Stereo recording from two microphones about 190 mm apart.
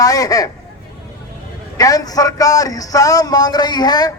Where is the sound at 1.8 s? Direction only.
20° left (ahead or behind).